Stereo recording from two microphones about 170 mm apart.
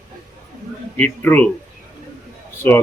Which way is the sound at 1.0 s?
10° left (ahead or behind).